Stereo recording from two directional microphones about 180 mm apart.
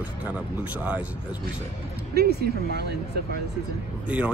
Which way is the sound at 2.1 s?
65° right (ahead or behind).